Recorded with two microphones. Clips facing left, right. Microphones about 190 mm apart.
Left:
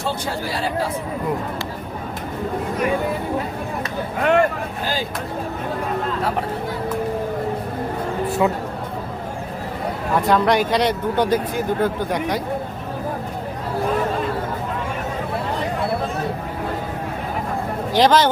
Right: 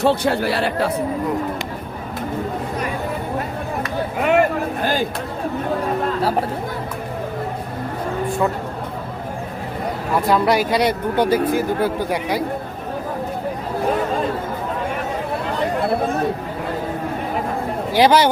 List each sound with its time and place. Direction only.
0.0 s speech: 65° right (ahead or behind)
4.2 s speech: 5° right (ahead or behind)
10.2 s speech: 5° right (ahead or behind)
17.9 s speech: 10° right (ahead or behind)